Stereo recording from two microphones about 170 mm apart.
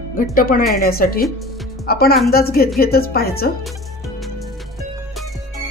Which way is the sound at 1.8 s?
65° left (ahead or behind).